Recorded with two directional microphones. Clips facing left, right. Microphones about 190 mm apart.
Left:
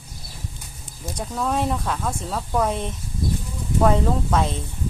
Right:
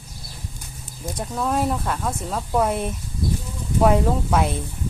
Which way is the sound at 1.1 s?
5° right (ahead or behind).